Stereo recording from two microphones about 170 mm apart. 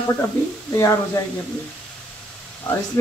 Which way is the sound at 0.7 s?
20° left (ahead or behind).